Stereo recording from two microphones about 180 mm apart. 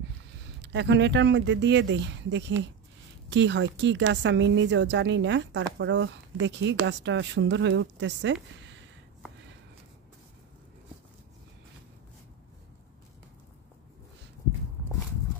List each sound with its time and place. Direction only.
0.6 s a woman's voice: 75° right (ahead or behind)